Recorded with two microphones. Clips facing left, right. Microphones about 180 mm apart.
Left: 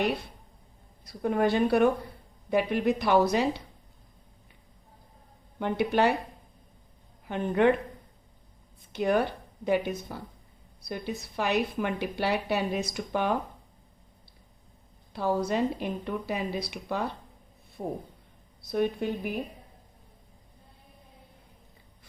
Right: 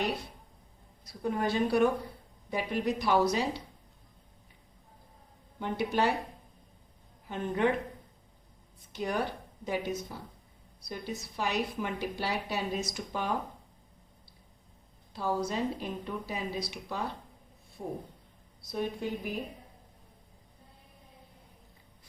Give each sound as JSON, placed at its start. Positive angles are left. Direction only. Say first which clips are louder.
{"t": 1.0, "sound": "a woman's voice", "louder": "left 5 dB", "side_deg": 60}
{"t": 5.5, "sound": "a woman's voice", "louder": "left 4 dB", "side_deg": 60}
{"t": 7.3, "sound": "a woman's voice", "louder": "left 5 dB", "side_deg": 65}
{"t": 8.9, "sound": "a woman's voice", "louder": "left 7 dB", "side_deg": 60}
{"t": 15.1, "sound": "a woman's voice", "louder": "left 4 dB", "side_deg": 60}